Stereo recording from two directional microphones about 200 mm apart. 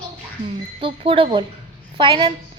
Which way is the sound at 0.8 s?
25° right (ahead or behind).